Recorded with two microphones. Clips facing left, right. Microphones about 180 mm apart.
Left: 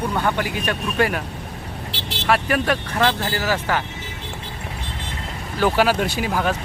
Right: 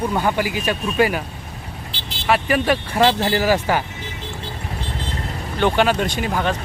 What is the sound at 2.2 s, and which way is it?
Speech, centre (ahead or behind).